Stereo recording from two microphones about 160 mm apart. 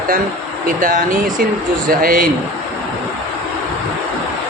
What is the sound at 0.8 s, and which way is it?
Speech, 60° right (ahead or behind).